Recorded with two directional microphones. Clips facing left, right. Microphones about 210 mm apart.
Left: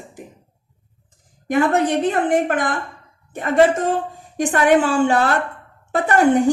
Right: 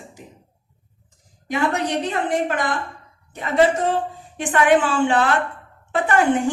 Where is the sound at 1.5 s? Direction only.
50° left (ahead or behind).